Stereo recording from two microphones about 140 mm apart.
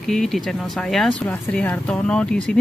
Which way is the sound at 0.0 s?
Centre (ahead or behind).